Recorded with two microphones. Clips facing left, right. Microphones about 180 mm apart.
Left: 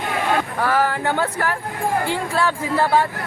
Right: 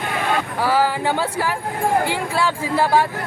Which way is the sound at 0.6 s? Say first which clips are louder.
Right 3 dB; 10° right (ahead or behind).